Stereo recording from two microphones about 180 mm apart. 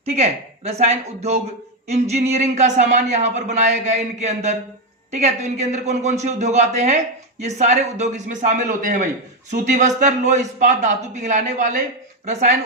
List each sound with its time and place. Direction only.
0.0 s a man's voice: 35° right (ahead or behind)